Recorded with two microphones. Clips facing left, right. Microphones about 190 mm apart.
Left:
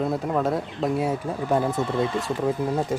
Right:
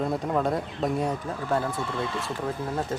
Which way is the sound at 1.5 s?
15° left (ahead or behind).